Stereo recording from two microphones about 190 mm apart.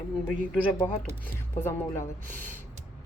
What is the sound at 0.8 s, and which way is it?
Speech, 20° left (ahead or behind).